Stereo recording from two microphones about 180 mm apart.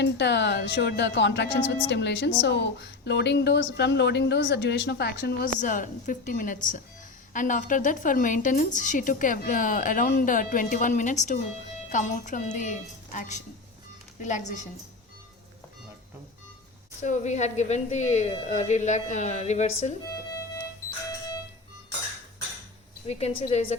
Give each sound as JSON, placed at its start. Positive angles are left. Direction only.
{"t": 0.0, "sound": "speech", "side_deg": 70}
{"t": 5.5, "sound": "a woman's voice", "side_deg": 45}
{"t": 17.0, "sound": "a woman's voice", "side_deg": 40}
{"t": 23.0, "sound": "a woman's voice", "side_deg": 35}